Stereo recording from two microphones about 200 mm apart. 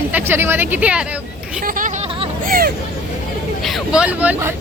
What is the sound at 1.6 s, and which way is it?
Speech, 45° right (ahead or behind).